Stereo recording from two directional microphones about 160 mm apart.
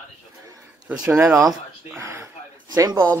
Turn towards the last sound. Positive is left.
turn(degrees=-25)  # may be behind; listen again after turning